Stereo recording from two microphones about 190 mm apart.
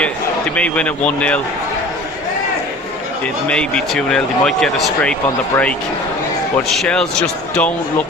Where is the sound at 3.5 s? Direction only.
5° left (ahead or behind).